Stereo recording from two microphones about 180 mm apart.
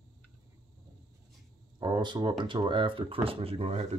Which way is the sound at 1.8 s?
25° right (ahead or behind).